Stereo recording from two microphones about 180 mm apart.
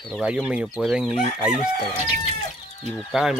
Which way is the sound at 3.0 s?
5° right (ahead or behind).